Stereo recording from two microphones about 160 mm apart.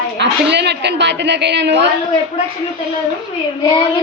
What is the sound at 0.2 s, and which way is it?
A woman's voice, 90° right.